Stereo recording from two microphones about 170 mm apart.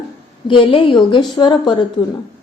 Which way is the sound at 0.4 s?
30° left (ahead or behind).